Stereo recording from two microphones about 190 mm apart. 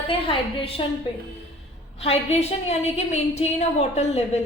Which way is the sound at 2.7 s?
35° left (ahead or behind).